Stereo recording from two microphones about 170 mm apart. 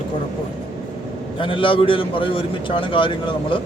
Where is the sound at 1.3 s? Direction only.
30° left (ahead or behind).